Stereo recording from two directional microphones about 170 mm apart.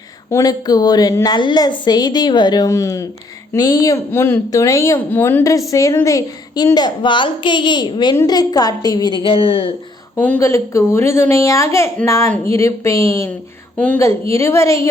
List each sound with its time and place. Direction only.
0.3 s speech: 20° left (ahead or behind)
10.2 s a woman's voice: 10° left (ahead or behind)
13.7 s a woman's voice: 5° left (ahead or behind)
14.0 s a woman's voice: 15° left (ahead or behind)